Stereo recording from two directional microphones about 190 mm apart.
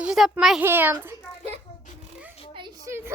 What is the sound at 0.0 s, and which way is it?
A child's voice, 5° right (ahead or behind).